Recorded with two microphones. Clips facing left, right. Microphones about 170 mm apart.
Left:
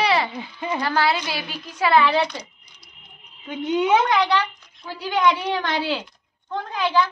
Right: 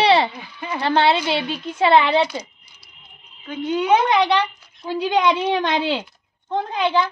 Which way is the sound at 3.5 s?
20° left (ahead or behind).